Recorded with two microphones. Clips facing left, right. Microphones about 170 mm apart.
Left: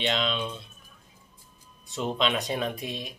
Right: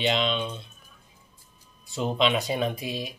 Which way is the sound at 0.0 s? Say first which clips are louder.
Right 3 dB; centre (ahead or behind).